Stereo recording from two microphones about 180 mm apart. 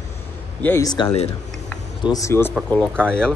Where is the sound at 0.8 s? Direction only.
20° left (ahead or behind); by 3.3 s 5° left (ahead or behind).